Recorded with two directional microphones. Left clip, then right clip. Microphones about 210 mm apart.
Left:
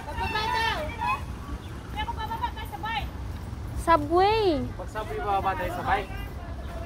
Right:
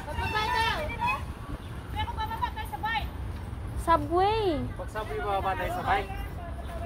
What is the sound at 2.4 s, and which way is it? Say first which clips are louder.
Vehicle: even; 25° right (ahead or behind).